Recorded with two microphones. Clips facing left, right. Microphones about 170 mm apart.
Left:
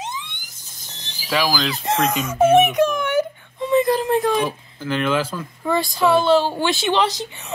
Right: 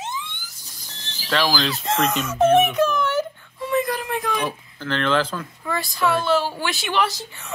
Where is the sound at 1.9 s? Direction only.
10° left (ahead or behind).